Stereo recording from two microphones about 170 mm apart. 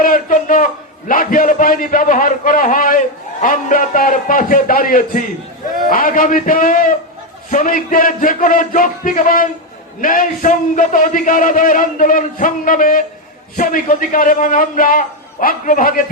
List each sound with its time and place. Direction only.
0.0 s a man's voice: 55° left (ahead or behind)